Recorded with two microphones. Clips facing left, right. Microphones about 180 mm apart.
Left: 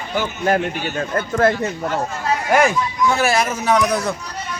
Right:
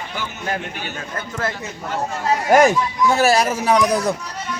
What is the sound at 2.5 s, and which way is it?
Speech, 40° right (ahead or behind).